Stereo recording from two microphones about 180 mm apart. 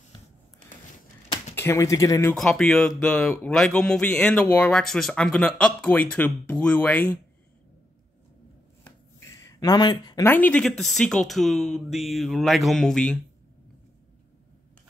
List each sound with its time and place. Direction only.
1.5 s speech: 15° left (ahead or behind)
2.3 s speech: 5° left (ahead or behind)
8.8 s a sound: 15° left (ahead or behind)
10.2 s speech: 10° left (ahead or behind)